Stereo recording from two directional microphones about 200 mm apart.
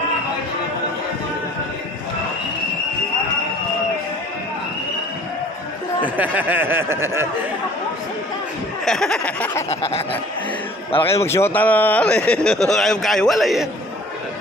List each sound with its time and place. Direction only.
6.0 s speech: 10° right (ahead or behind)
8.8 s speech: centre (ahead or behind)
9.7 s chuckle: 30° left (ahead or behind)
11.2 s speech: 10° left (ahead or behind)